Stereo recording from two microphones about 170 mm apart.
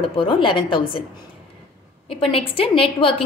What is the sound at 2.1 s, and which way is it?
A woman's voice, 30° left (ahead or behind).